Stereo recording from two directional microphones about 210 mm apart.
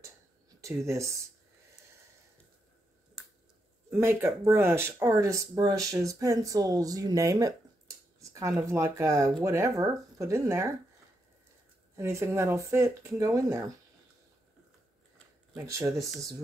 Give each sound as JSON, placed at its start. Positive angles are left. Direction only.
{"t": 0.6, "sound": "speech", "side_deg": -15}
{"t": 3.2, "sound": "a sound", "side_deg": 0}
{"t": 3.9, "sound": "speech", "side_deg": -10}
{"t": 11.9, "sound": "speech", "side_deg": -15}
{"t": 15.5, "sound": "speech", "side_deg": -15}